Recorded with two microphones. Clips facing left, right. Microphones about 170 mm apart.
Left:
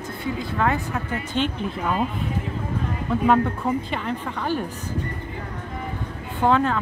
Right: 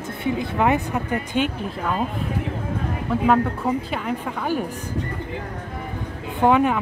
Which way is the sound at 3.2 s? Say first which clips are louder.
Even; 5° right (ahead or behind).